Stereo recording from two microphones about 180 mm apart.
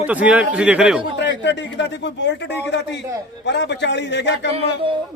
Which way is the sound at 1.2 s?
80° left.